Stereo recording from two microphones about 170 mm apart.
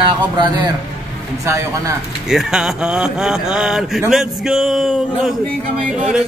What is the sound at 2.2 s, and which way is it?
A man's voice, 5° right (ahead or behind).